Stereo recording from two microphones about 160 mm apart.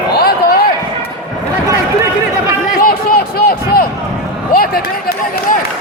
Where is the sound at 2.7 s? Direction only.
60° left (ahead or behind).